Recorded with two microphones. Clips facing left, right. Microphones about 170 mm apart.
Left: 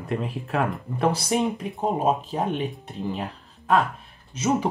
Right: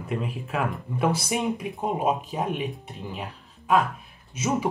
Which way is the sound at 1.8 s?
35° left (ahead or behind).